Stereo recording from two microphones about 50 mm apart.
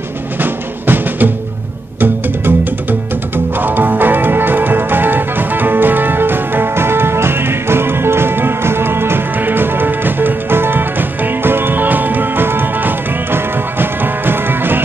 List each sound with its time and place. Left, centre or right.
0.4 s music: right